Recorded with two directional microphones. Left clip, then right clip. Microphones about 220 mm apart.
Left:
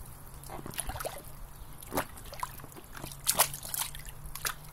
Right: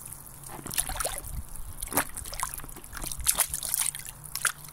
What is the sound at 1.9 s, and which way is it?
Trickle, 30° right (ahead or behind).